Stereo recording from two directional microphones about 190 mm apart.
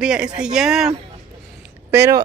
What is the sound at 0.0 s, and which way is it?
Speech, 5° right (ahead or behind).